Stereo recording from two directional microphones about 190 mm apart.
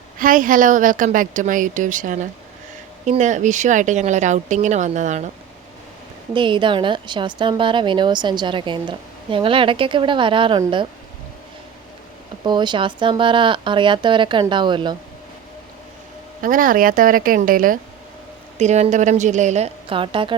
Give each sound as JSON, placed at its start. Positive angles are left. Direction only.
{"t": 0.2, "sound": "a woman's voice", "side_deg": -45}
{"t": 6.3, "sound": "a woman's voice", "side_deg": -25}
{"t": 12.4, "sound": "a woman's voice", "side_deg": -25}
{"t": 16.4, "sound": "a woman's voice", "side_deg": -45}
{"t": 18.5, "sound": "speech", "side_deg": -35}